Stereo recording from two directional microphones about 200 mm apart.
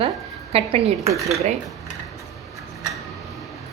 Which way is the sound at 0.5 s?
30° right (ahead or behind).